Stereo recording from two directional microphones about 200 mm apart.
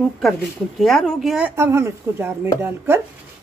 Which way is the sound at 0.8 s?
Centre (ahead or behind).